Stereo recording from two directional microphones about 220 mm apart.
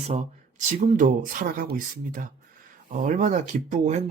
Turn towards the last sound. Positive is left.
turn(degrees=-30)  # may be behind; listen again after turning